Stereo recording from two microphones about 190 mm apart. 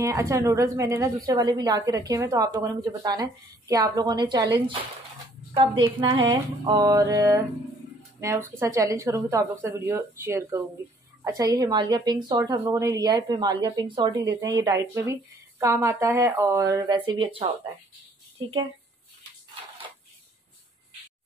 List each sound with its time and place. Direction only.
0.0 s a woman's voice: 15° right (ahead or behind)